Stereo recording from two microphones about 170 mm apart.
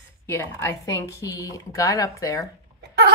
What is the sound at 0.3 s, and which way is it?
Speech, 15° left (ahead or behind).